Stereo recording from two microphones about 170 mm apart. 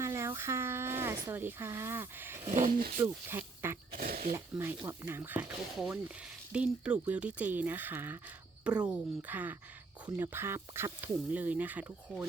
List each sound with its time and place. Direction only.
0.0 s speech: 15° right (ahead or behind)
2.5 s speech: 50° right (ahead or behind)
3.0 s speech: 15° right (ahead or behind)
3.9 s speech: 60° right (ahead or behind)
4.4 s speech: 15° right (ahead or behind)
5.7 s speech: centre (ahead or behind)